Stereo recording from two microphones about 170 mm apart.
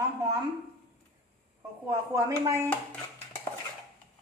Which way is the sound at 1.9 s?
20° right (ahead or behind).